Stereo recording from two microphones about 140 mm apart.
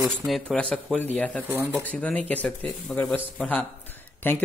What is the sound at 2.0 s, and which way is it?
A man's voice, 10° left (ahead or behind).